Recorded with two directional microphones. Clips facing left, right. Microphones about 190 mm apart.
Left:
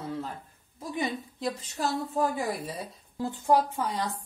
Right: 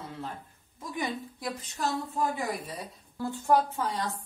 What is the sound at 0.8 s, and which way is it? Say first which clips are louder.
A woman's voice: left 2 dB; 25° left (ahead or behind).